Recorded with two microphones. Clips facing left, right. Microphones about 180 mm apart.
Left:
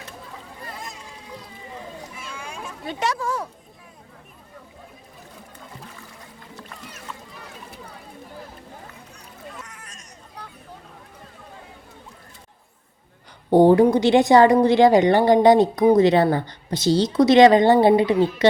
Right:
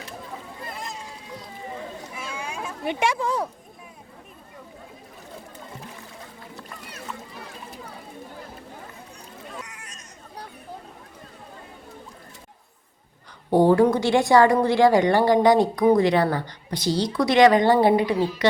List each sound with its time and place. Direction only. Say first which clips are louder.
3.0 s speech: right 1 dB; 15° right (ahead or behind)
13.5 s a woman's voice: left 3 dB; 20° left (ahead or behind)